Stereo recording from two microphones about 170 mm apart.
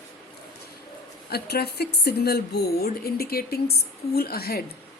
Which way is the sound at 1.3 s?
70° left (ahead or behind).